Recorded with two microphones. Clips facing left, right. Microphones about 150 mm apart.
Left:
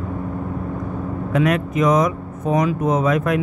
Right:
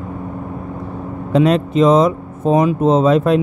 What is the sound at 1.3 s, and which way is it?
Speech, 30° right (ahead or behind).